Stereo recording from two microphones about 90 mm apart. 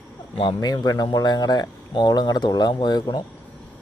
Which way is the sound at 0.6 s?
50° left (ahead or behind).